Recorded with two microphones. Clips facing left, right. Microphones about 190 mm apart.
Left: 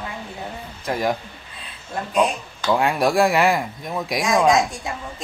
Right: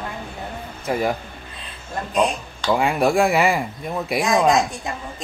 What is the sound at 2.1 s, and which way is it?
Speech, centre (ahead or behind).